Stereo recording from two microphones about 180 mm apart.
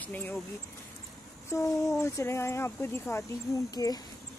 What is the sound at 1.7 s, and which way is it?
A woman's voice, 15° left (ahead or behind).